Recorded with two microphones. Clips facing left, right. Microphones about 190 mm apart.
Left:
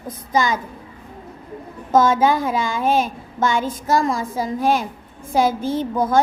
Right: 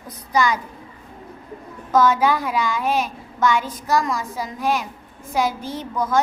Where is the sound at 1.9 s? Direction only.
25° left (ahead or behind).